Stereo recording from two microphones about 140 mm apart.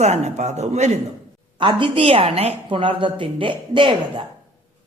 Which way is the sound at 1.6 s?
35° right (ahead or behind).